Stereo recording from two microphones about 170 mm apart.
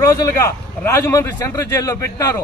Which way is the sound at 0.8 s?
15° left (ahead or behind).